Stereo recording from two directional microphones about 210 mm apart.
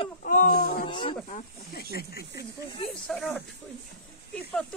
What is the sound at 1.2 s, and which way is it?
Speech, 40° left (ahead or behind).